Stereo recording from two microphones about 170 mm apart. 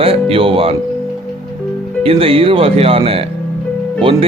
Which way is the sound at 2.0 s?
35° right (ahead or behind).